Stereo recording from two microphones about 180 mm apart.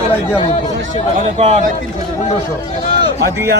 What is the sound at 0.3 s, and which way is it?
Speech, 30° left (ahead or behind).